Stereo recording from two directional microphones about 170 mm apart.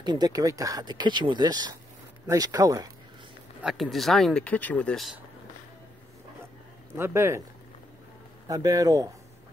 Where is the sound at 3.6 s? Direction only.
Centre (ahead or behind).